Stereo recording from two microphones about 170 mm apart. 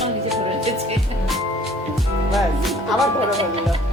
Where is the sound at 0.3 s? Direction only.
35° right (ahead or behind).